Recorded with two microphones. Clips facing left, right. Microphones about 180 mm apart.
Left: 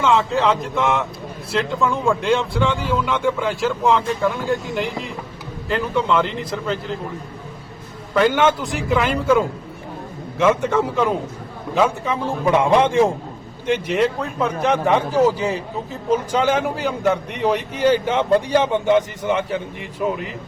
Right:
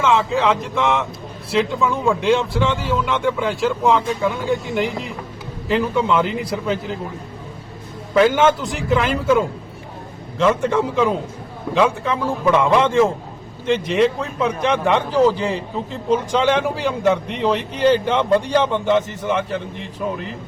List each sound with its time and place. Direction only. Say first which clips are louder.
0.0 s speech: even; centre (ahead or behind)
8.1 s speech: right 2 dB; centre (ahead or behind)
12.5 s a man's voice: even; 15° left (ahead or behind)